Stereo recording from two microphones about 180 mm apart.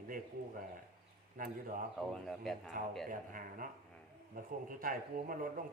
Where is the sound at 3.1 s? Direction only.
50° right (ahead or behind).